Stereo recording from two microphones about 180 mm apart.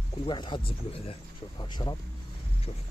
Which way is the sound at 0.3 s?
25° left (ahead or behind).